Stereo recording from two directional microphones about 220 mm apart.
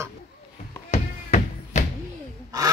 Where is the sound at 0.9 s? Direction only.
30° left (ahead or behind).